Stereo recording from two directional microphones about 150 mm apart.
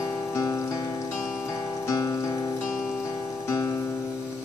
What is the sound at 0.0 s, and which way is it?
Music, 20° left (ahead or behind).